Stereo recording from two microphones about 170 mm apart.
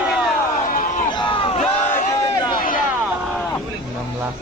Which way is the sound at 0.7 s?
50° left (ahead or behind).